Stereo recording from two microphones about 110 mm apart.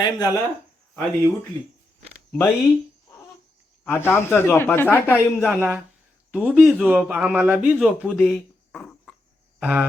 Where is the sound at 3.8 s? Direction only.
20° left (ahead or behind).